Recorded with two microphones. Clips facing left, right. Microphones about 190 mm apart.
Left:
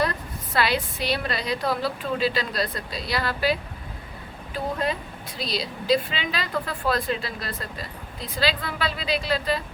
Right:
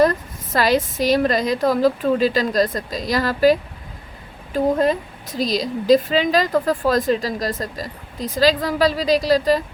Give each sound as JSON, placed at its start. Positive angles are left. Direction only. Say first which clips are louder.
{"t": 0.0, "sound": "a woman's voice", "louder": "right 9 dB", "side_deg": -45}